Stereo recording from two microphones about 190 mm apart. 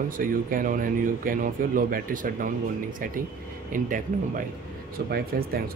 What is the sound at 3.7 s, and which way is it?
Speech, 45° right (ahead or behind).